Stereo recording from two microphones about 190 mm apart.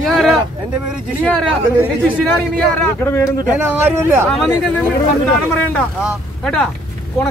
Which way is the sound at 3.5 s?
10° right (ahead or behind).